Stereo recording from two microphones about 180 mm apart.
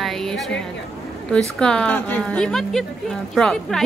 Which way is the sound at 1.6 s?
5° left (ahead or behind).